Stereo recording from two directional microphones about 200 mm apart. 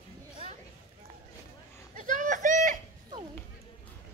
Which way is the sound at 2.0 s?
40° right (ahead or behind).